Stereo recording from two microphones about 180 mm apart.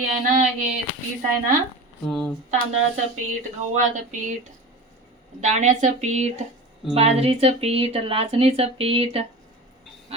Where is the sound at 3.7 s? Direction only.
45° right (ahead or behind).